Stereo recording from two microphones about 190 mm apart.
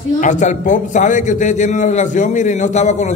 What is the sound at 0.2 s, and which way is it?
A man's voice, 40° left (ahead or behind).